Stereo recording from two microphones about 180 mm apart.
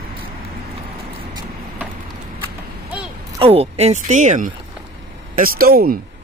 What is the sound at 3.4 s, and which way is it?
Speech, 35° right (ahead or behind).